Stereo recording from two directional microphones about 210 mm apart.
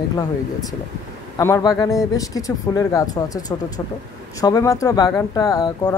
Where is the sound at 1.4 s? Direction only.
15° left (ahead or behind).